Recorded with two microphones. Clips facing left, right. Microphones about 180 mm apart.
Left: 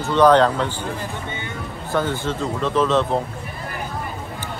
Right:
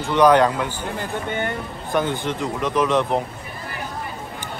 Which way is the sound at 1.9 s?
15° right (ahead or behind).